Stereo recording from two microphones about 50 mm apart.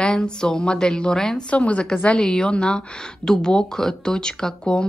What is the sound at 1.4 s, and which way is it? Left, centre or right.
A woman's voice, left.